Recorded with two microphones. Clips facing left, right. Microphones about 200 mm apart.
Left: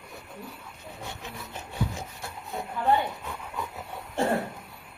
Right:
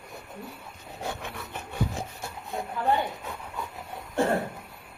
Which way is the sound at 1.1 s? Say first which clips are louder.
Right 6 dB; 60° right (ahead or behind).